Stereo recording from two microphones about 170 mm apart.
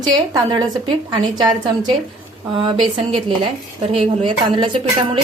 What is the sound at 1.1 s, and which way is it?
Speech, 25° right (ahead or behind).